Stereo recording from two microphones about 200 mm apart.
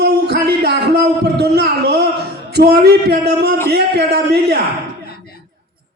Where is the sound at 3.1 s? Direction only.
55° right (ahead or behind).